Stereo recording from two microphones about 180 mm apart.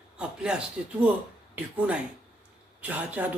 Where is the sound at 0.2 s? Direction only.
5° right (ahead or behind).